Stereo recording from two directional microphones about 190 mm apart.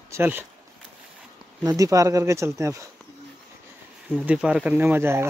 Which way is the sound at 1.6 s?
20° right (ahead or behind).